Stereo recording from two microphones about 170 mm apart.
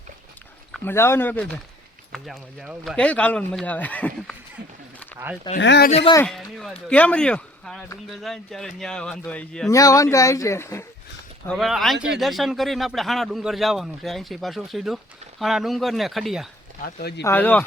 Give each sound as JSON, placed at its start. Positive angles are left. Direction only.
{"t": 0.9, "sound": "speech", "side_deg": 15}
{"t": 5.5, "sound": "speech", "side_deg": 85}
{"t": 6.2, "sound": "speech", "side_deg": 0}
{"t": 9.6, "sound": "speech", "side_deg": 20}
{"t": 11.5, "sound": "speech", "side_deg": 0}
{"t": 16.8, "sound": "speech", "side_deg": 70}
{"t": 17.2, "sound": "speech", "side_deg": 10}